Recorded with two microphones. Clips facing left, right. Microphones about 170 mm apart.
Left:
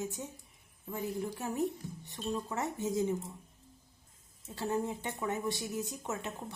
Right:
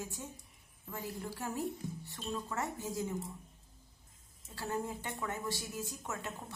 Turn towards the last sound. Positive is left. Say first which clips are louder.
# left 4 dB
turn(degrees=20)  # may be behind; listen again after turning